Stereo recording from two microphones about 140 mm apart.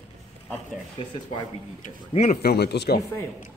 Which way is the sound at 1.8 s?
60° left (ahead or behind).